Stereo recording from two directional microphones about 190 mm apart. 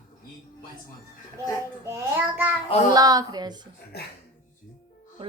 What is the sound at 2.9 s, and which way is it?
Speech, 20° right (ahead or behind).